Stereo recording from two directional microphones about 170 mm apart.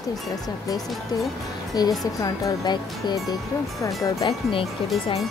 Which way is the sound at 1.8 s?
25° left (ahead or behind).